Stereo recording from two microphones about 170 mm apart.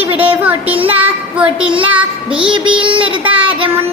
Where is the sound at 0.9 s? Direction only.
10° right (ahead or behind).